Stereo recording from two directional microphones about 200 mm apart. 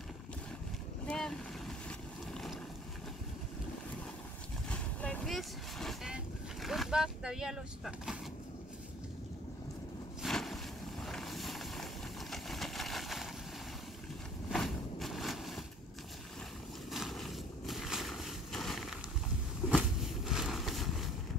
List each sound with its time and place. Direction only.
1.0 s boat: 5° left (ahead or behind)
1.9 s vehicle: 5° left (ahead or behind)
4.6 s vehicle: 5° left (ahead or behind)
10.2 s vehicle: centre (ahead or behind)
14.5 s a sound: centre (ahead or behind)
16.9 s a sound: centre (ahead or behind)